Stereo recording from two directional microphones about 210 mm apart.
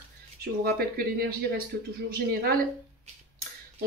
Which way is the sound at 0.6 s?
45° right (ahead or behind).